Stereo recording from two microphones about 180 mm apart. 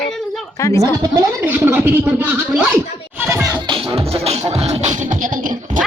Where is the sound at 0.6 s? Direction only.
15° left (ahead or behind).